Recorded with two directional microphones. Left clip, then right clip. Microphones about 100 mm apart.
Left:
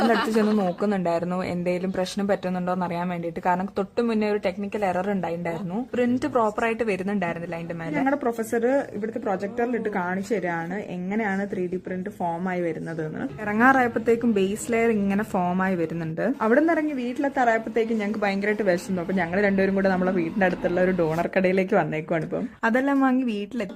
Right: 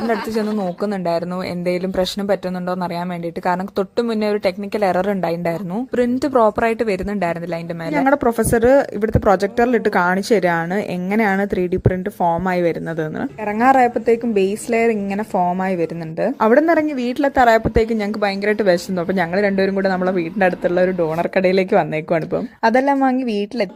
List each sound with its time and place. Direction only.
0.8 s a man's voice: 25° right (ahead or behind)
7.9 s speech: 45° right (ahead or behind)
13.5 s a man's voice: 35° right (ahead or behind)
19.3 s a man's voice: 30° right (ahead or behind)
22.9 s a man's voice: 25° right (ahead or behind)